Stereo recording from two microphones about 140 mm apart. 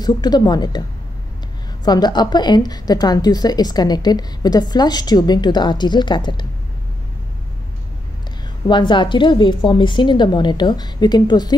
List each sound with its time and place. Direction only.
0.0 s a woman's voice: 30° left (ahead or behind)
1.9 s a woman's voice: 30° left (ahead or behind)
8.6 s a woman's voice: 35° left (ahead or behind)